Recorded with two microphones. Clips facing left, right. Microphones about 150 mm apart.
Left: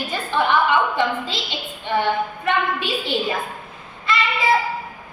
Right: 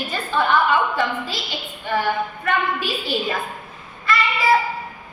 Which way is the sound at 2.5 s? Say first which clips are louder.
Left 1 dB; 20° left (ahead or behind).